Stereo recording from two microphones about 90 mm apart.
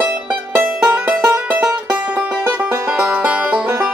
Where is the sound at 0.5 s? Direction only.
20° right (ahead or behind).